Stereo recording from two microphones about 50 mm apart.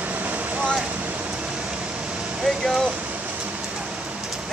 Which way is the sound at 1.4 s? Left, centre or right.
Centre.